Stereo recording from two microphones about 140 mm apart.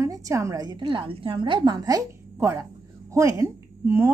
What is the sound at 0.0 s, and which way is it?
Speech, 20° right (ahead or behind).